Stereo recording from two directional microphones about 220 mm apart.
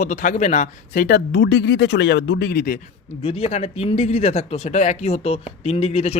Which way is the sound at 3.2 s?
25° left (ahead or behind).